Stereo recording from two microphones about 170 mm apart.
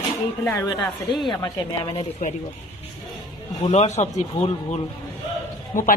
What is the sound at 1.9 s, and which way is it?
Speech, 35° left (ahead or behind).